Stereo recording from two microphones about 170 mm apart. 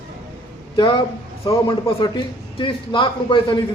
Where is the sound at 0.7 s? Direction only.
25° left (ahead or behind).